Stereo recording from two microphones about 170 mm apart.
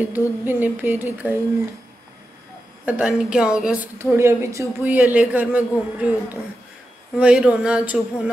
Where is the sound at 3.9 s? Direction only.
15° right (ahead or behind).